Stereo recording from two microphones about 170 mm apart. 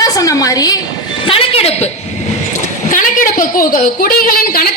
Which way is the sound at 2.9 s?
50° left (ahead or behind).